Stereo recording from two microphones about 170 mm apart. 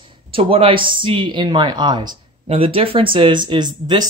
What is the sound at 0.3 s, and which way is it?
Speech, 30° right (ahead or behind).